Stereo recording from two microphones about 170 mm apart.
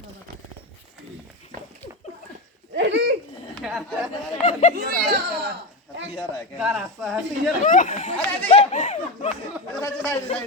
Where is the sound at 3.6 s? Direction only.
5° right (ahead or behind).